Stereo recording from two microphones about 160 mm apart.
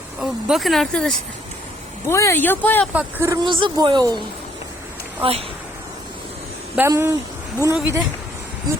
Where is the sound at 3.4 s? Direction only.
30° right (ahead or behind).